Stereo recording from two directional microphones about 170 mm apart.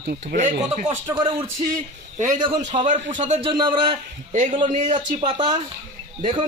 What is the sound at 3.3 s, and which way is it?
Speech, 35° right (ahead or behind).